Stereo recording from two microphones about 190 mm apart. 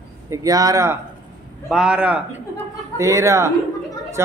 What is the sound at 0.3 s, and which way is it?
Speech, 20° right (ahead or behind).